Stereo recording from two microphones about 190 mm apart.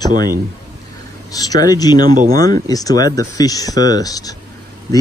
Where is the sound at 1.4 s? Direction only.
20° left (ahead or behind).